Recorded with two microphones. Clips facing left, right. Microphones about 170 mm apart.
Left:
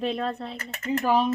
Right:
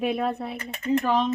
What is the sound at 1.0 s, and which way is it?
Speech, 10° left (ahead or behind).